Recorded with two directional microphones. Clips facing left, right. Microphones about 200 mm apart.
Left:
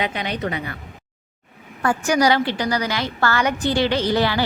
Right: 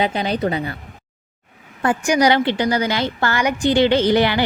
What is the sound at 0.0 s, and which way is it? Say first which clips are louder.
Speech: right 5 dB; 30° right (ahead or behind).